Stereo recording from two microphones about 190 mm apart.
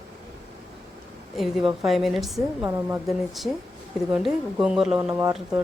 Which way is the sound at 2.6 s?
10° right (ahead or behind).